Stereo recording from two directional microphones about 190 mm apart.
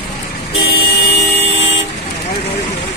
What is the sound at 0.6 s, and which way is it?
Vehicle, 60° left (ahead or behind).